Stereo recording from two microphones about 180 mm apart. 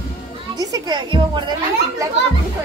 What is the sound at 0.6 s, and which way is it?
Music, 20° right (ahead or behind).